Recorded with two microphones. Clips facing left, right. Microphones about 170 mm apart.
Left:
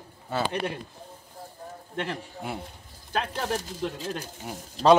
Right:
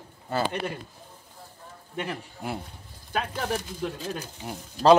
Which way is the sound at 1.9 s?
5° right (ahead or behind).